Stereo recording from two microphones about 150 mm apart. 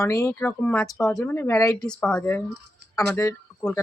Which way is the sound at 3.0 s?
20° left (ahead or behind).